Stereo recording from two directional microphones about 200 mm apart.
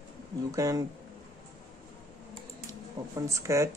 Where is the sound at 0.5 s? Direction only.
15° right (ahead or behind).